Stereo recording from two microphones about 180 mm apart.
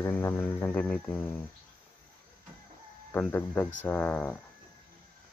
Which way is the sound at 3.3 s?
10° left (ahead or behind).